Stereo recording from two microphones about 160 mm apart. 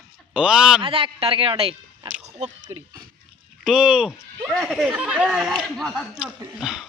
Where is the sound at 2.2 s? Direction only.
40° right (ahead or behind).